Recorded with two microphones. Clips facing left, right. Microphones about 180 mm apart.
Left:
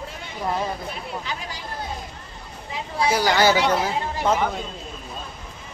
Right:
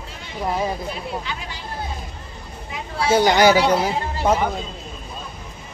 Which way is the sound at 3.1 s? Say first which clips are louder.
Right 5 dB; 20° right (ahead or behind).